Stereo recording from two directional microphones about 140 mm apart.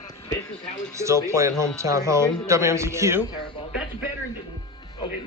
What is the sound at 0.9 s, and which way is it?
Speech, 20° right (ahead or behind).